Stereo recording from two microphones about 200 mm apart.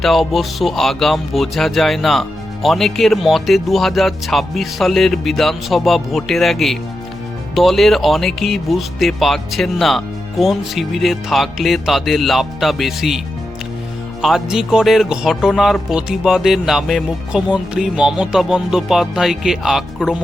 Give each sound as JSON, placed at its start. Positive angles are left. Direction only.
{"t": 0.0, "sound": "speech", "side_deg": 0}